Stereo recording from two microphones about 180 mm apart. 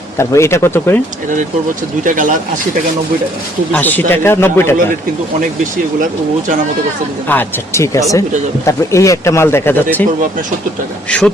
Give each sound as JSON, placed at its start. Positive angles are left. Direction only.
{"t": 0.2, "sound": "speech", "side_deg": 15}
{"t": 2.0, "sound": "speech", "side_deg": -45}
{"t": 3.7, "sound": "speech", "side_deg": 10}
{"t": 7.3, "sound": "speech", "side_deg": 15}